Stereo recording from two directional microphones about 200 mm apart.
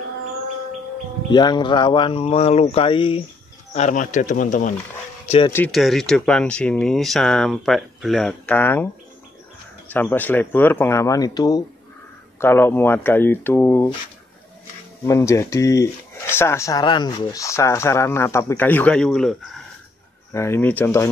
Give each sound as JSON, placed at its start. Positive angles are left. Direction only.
{"t": 1.3, "sound": "speech", "side_deg": 20}
{"t": 3.7, "sound": "speech", "side_deg": 35}
{"t": 5.5, "sound": "speech", "side_deg": 5}
{"t": 9.8, "sound": "speech", "side_deg": 10}
{"t": 15.0, "sound": "speech", "side_deg": 15}
{"t": 20.3, "sound": "speech", "side_deg": 10}